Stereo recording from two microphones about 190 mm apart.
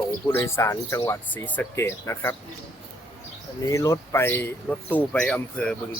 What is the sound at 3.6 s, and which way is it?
Speech, 20° left (ahead or behind).